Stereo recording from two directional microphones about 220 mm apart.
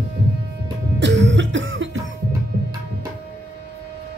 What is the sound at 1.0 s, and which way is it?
Cough, 55° right (ahead or behind).